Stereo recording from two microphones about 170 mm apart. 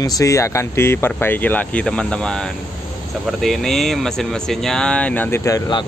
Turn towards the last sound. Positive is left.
turn(degrees=20)  # may be behind; listen again after turning